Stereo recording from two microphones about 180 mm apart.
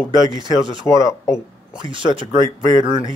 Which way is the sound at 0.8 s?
20° left (ahead or behind).